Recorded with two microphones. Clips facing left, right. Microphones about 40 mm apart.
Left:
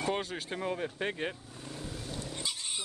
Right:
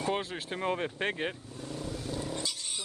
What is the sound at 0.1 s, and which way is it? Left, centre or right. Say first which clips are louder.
Speech: right 1 dB; centre.